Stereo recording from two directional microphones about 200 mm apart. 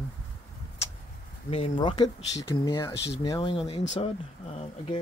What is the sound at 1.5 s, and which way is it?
Speech, 30° left (ahead or behind).